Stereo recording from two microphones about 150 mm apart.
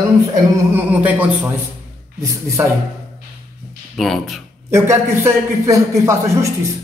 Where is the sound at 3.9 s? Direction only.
Centre (ahead or behind).